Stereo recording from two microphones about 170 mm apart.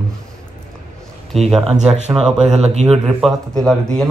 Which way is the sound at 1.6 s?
40° right (ahead or behind).